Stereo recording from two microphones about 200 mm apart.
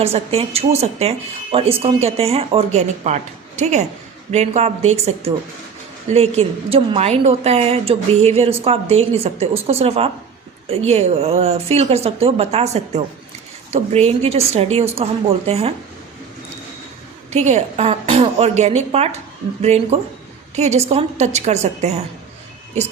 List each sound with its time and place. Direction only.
0.0 s a woman's voice: 30° right (ahead or behind)
17.3 s a woman's voice: 35° right (ahead or behind)